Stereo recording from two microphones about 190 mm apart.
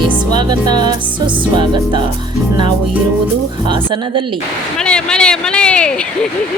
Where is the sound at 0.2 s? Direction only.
20° right (ahead or behind).